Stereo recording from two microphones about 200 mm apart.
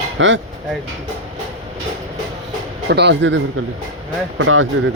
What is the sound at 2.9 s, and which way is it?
Speech, 60° right (ahead or behind).